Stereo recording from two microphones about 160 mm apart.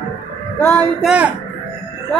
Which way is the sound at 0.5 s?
10° left (ahead or behind).